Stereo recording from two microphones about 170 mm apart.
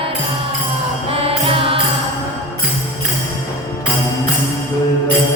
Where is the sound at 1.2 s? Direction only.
35° right (ahead or behind).